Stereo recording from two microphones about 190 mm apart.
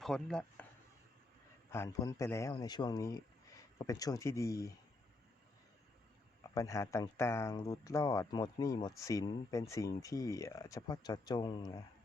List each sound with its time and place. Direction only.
0.0 s speech: 5° left (ahead or behind)
1.7 s speech: 15° left (ahead or behind)
6.5 s speech: 15° left (ahead or behind)